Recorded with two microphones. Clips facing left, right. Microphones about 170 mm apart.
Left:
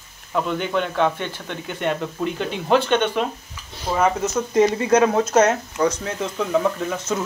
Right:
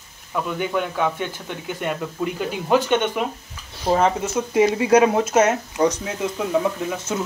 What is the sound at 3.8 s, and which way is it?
Speech, 30° right (ahead or behind).